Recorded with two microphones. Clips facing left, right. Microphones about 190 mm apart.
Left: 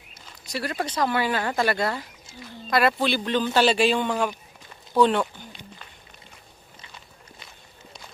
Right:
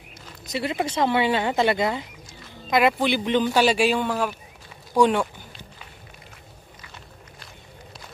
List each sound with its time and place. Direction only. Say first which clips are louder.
0.5 s speech: right 3 dB; 20° right (ahead or behind)